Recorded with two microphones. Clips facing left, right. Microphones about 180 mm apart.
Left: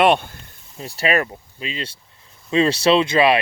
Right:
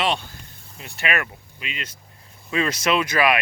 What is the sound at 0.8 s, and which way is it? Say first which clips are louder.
Speech: left 6 dB; 35° left (ahead or behind).